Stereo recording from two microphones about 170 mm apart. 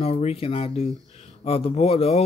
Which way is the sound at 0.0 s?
40° left (ahead or behind).